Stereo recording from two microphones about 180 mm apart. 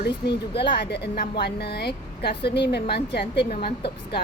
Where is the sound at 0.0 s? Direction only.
65° left (ahead or behind).